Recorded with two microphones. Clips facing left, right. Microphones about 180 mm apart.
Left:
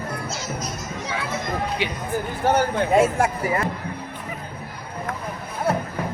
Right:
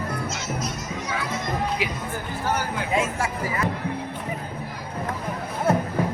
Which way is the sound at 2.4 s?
60° left (ahead or behind).